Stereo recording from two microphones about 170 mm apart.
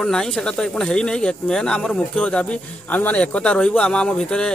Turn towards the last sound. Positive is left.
turn(degrees=5)  # may be behind; listen again after turning